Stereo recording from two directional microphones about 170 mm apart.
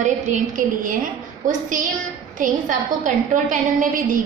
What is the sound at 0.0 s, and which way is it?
A woman's voice, 45° right (ahead or behind).